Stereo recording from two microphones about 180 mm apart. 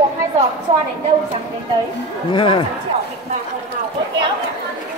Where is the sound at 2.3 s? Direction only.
25° left (ahead or behind).